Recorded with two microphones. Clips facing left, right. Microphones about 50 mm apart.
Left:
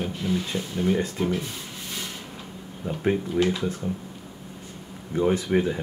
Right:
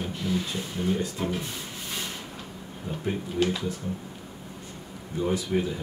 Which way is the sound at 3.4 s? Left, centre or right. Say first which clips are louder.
Even; centre.